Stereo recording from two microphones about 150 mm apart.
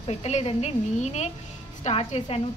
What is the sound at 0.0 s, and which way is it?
A woman's voice, 45° left (ahead or behind).